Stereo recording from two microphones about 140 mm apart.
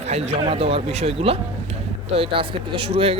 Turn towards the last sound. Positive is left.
turn(degrees=-45)  # may be behind; listen again after turning